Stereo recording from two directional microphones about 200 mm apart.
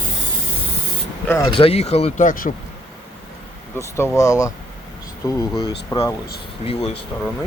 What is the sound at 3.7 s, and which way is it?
Speech, 15° left (ahead or behind).